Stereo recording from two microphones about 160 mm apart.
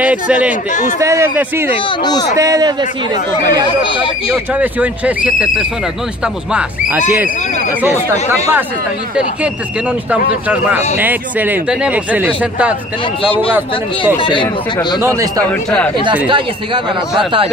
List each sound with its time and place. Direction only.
0.0 s speech: 10° right (ahead or behind)
0.9 s speech: 20° right (ahead or behind)
1.9 s speech: 25° left (ahead or behind)
2.3 s a man's voice: 20° right (ahead or behind)
3.6 s speech: 30° left (ahead or behind)
4.6 s speech: 10° right (ahead or behind)
11.0 s speech: 10° right (ahead or behind)
13.2 s speech: 35° left (ahead or behind)
13.5 s speech: 10° right (ahead or behind)
14.1 s speech: 30° left (ahead or behind)
16.3 s speech: 30° right (ahead or behind)